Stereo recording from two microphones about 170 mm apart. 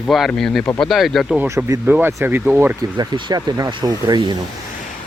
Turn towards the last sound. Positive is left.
turn(degrees=-25)  # may be behind; listen again after turning